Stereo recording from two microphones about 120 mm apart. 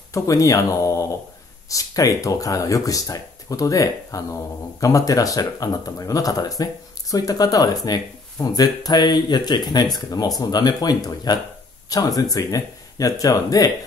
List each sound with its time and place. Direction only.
0.1 s speech: 25° left (ahead or behind)